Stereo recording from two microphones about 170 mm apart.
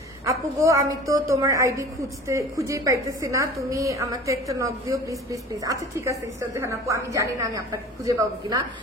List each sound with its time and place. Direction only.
0.2 s a woman's voice: 20° right (ahead or behind)